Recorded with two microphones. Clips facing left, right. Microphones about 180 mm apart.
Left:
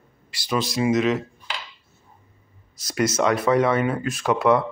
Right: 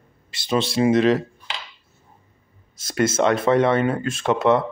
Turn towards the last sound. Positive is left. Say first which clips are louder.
# right 1 dB
turn(degrees=-25)  # may be behind; listen again after turning